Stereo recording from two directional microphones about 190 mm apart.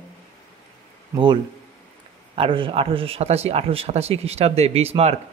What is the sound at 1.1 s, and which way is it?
Speech, 25° right (ahead or behind).